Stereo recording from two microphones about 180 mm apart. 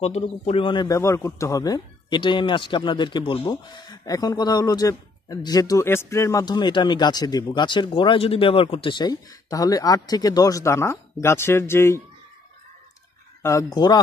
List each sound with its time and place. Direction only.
0.0 s a man's voice: 35° left (ahead or behind); by 12.0 s 15° left (ahead or behind)
13.4 s a man's voice: 15° left (ahead or behind)